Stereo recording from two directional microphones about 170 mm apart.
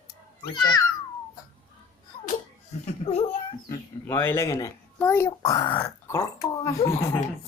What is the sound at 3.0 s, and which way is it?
Speech, 35° left (ahead or behind).